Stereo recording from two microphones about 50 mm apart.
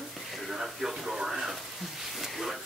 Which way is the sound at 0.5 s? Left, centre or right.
Centre.